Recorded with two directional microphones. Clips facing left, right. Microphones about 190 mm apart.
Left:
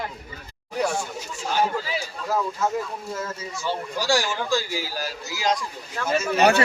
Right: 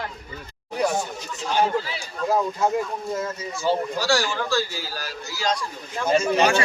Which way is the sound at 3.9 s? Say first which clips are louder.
Right 1 dB; 15° left (ahead or behind).